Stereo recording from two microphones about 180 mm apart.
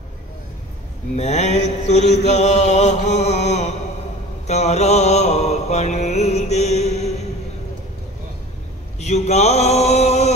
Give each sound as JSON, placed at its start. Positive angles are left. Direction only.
{"t": 1.1, "sound": "mantra", "side_deg": 40}
{"t": 9.0, "sound": "mantra", "side_deg": 40}